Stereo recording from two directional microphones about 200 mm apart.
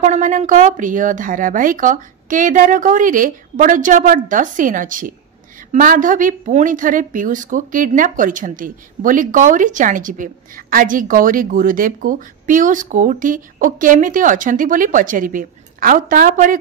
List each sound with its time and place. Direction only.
0.0 s a woman's voice: 40° right (ahead or behind)